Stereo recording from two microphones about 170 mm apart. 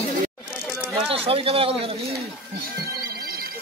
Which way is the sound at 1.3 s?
35° right (ahead or behind).